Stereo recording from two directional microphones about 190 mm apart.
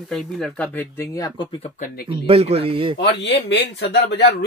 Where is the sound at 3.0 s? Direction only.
65° left (ahead or behind).